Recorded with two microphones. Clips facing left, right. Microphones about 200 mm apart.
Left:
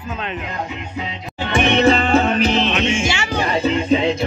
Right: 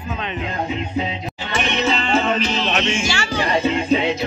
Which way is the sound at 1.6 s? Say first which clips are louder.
Left 7 dB; 55° left (ahead or behind).